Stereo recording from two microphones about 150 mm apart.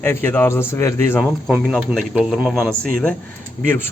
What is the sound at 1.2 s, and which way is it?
Speech, 5° right (ahead or behind).